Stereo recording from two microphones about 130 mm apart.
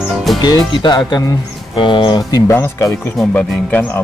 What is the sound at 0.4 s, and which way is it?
Speech, 35° left (ahead or behind).